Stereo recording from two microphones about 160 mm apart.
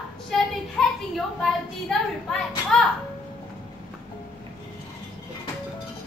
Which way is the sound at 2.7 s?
5° left (ahead or behind).